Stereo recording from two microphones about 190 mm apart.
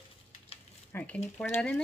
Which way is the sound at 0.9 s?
5° left (ahead or behind).